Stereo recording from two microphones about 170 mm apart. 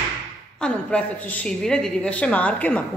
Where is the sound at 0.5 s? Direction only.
5° left (ahead or behind).